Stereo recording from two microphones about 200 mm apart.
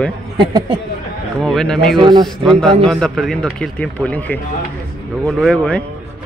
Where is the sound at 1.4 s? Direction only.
Centre (ahead or behind).